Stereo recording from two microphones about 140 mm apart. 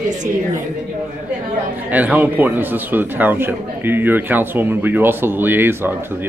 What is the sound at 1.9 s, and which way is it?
A man's voice, 10° right (ahead or behind).